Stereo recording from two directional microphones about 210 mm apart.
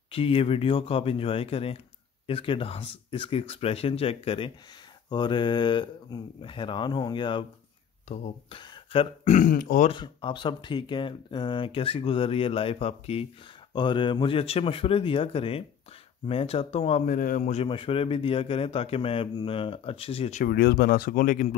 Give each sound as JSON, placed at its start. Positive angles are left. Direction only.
{"t": 0.1, "sound": "speech", "side_deg": 25}
{"t": 9.8, "sound": "speech", "side_deg": 20}
{"t": 20.4, "sound": "speech", "side_deg": 50}